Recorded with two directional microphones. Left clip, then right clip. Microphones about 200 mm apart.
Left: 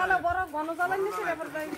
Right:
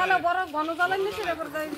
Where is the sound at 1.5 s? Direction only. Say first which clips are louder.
Right 3 dB; 55° right (ahead or behind).